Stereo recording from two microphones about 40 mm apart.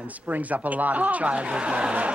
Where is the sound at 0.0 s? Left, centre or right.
Right.